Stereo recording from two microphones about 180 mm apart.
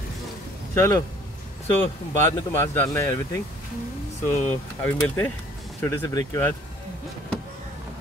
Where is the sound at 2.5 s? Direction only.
15° left (ahead or behind).